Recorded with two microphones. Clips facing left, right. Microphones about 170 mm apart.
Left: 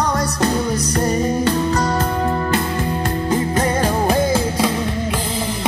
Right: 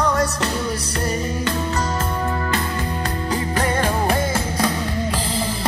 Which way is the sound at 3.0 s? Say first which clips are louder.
Left 6 dB; 25° left (ahead or behind).